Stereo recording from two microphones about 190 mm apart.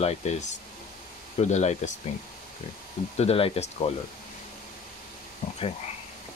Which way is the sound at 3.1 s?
30° left (ahead or behind).